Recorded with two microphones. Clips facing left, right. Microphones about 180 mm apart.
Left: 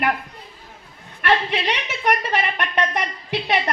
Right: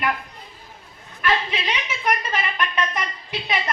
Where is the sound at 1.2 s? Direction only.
65° left (ahead or behind).